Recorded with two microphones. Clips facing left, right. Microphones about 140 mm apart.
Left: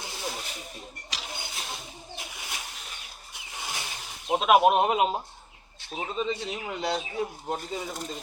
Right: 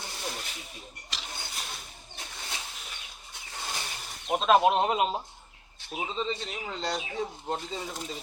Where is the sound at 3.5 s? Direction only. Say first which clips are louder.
Even; 15° left (ahead or behind).